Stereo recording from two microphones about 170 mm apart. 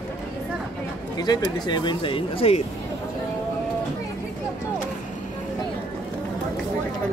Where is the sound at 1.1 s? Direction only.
25° left (ahead or behind).